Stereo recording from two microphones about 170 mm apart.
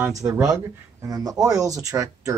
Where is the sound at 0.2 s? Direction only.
20° right (ahead or behind).